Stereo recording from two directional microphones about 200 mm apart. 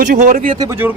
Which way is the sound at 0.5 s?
15° right (ahead or behind).